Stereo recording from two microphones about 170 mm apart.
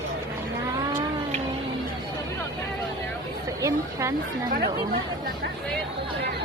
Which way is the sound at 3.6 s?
20° right (ahead or behind).